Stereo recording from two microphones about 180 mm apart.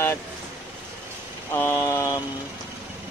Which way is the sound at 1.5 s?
15° left (ahead or behind).